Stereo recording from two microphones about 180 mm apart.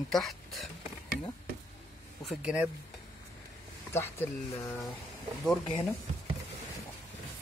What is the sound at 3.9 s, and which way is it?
Speech, 15° left (ahead or behind).